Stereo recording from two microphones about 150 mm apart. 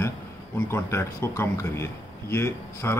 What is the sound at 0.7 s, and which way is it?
A man's voice, 15° left (ahead or behind).